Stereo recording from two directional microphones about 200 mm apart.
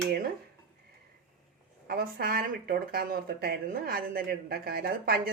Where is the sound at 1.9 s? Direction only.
45° right (ahead or behind).